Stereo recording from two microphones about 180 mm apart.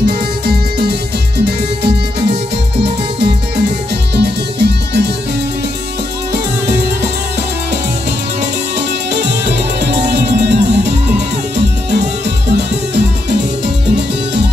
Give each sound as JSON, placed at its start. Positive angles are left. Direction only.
{"t": 0.0, "sound": "music", "side_deg": -60}
{"t": 8.4, "sound": "music", "side_deg": -70}